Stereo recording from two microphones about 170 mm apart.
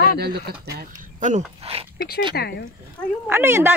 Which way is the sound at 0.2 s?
70° right (ahead or behind).